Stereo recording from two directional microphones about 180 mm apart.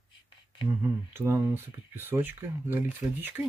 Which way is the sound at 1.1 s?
15° right (ahead or behind).